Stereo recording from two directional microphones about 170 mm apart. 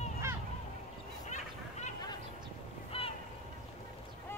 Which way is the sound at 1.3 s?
45° left (ahead or behind).